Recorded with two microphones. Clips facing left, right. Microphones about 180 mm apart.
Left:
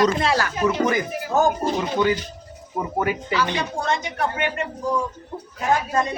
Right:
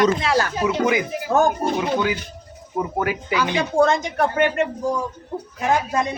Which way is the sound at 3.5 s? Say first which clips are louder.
Right 7 dB; 50° right (ahead or behind).